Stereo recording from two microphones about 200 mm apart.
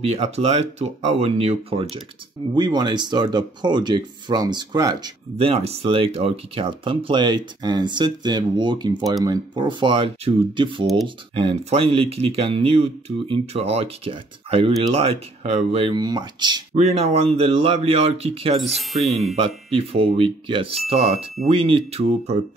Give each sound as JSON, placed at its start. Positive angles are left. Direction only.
{"t": 0.0, "sound": "speech", "side_deg": -30}
{"t": 5.5, "sound": "speech", "side_deg": -30}
{"t": 16.7, "sound": "speech", "side_deg": -30}
{"t": 18.6, "sound": "speech", "side_deg": 0}
{"t": 19.3, "sound": "speech", "side_deg": -25}